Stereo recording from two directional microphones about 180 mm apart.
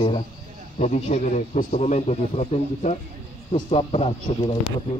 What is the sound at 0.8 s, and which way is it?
A man's voice, 40° left (ahead or behind).